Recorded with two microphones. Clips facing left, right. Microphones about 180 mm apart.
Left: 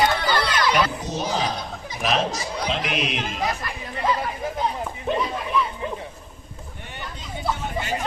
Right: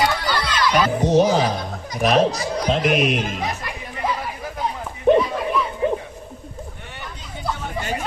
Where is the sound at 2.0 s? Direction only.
40° right (ahead or behind).